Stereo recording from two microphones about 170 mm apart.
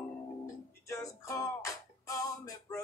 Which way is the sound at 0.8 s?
20° left (ahead or behind).